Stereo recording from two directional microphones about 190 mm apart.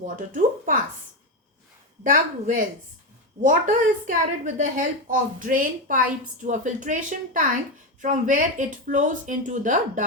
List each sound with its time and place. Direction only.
0.0 s a woman's voice: 45° right (ahead or behind)
2.0 s a woman's voice: 45° right (ahead or behind)